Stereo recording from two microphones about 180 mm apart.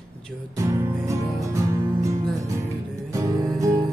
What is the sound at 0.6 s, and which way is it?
Music, 15° right (ahead or behind).